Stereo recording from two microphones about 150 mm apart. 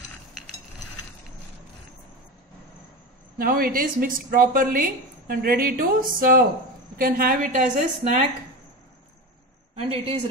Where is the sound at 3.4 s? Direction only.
70° right (ahead or behind).